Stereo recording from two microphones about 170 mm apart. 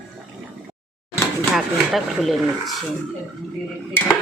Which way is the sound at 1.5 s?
Centre (ahead or behind).